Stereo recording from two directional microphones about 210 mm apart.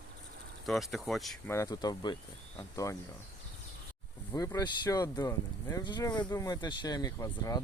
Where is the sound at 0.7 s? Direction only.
Centre (ahead or behind).